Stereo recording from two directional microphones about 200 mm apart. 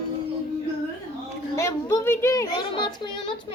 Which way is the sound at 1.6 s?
15° left (ahead or behind).